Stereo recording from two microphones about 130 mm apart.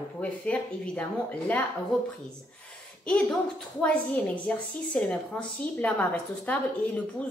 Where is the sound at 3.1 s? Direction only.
5° left (ahead or behind).